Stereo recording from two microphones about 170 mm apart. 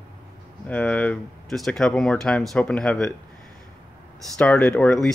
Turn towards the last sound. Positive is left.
turn(degrees=5)  # may be behind; listen again after turning